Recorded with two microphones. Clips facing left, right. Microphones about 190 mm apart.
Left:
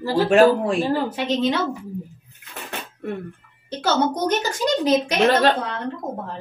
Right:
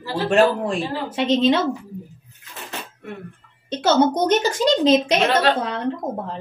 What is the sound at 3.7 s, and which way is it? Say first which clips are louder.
A woman's voice: right 4 dB; 20° right (ahead or behind).